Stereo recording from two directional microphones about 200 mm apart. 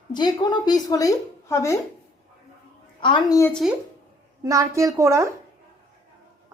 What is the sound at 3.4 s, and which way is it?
Speech, 5° left (ahead or behind).